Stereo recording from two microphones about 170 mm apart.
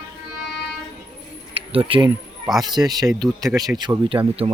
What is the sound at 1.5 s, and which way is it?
Speech, 35° right (ahead or behind).